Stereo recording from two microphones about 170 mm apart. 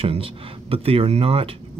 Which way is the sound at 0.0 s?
35° right (ahead or behind).